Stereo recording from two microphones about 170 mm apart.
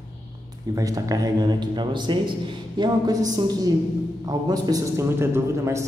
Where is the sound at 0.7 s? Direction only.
20° right (ahead or behind).